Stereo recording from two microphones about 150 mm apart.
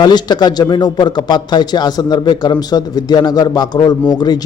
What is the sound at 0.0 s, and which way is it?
Speech, 30° left (ahead or behind).